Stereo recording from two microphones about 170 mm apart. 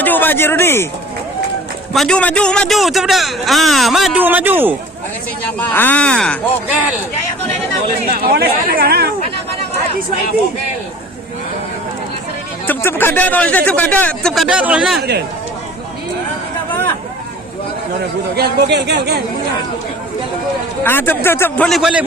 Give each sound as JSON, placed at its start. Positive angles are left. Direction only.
{"t": 0.0, "sound": "speech", "side_deg": 10}
{"t": 1.9, "sound": "a man's voice", "side_deg": 5}
{"t": 5.5, "sound": "speech", "side_deg": 10}
{"t": 8.1, "sound": "speech", "side_deg": -65}
{"t": 12.6, "sound": "speech", "side_deg": 15}
{"t": 14.4, "sound": "speech", "side_deg": -5}
{"t": 18.3, "sound": "speech", "side_deg": -75}
{"t": 20.8, "sound": "speech", "side_deg": 10}